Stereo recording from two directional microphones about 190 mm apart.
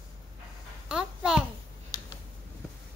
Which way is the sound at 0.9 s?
5° right (ahead or behind).